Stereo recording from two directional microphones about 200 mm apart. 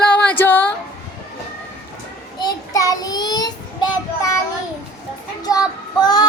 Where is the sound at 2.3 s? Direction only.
20° left (ahead or behind).